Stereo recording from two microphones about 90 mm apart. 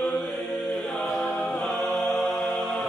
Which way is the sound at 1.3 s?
5° left (ahead or behind).